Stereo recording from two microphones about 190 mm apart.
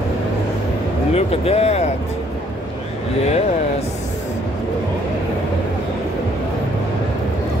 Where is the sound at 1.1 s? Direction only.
30° left (ahead or behind).